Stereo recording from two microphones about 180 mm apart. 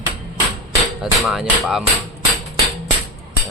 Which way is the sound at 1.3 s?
Centre (ahead or behind).